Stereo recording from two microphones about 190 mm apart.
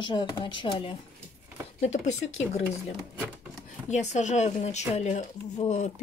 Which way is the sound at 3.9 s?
40° left (ahead or behind).